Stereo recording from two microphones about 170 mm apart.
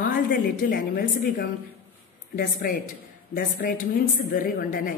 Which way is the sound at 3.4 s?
60° left (ahead or behind).